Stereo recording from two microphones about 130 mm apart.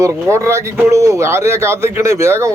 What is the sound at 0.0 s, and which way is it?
Speech, 20° right (ahead or behind).